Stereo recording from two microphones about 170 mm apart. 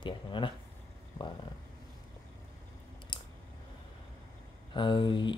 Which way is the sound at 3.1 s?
30° left (ahead or behind).